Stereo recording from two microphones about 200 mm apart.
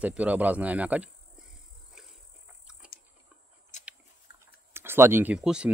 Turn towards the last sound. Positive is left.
turn(degrees=-5)  # may be behind; listen again after turning